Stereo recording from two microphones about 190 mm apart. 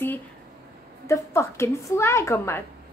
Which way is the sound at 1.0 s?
15° left (ahead or behind).